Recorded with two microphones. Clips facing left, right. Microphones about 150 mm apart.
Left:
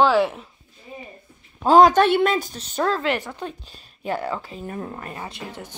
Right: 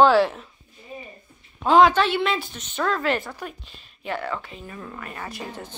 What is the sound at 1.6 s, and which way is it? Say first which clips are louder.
A woman's voice: left 3 dB; 40° left (ahead or behind).